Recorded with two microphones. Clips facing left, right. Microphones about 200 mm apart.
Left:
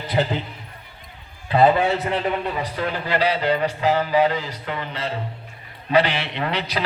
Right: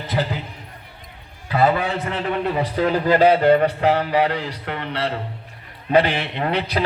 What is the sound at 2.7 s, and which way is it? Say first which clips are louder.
A man's voice: right 8 dB; 40° right (ahead or behind).